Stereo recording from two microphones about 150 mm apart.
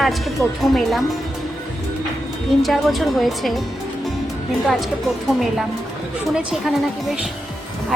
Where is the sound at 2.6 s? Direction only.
Centre (ahead or behind).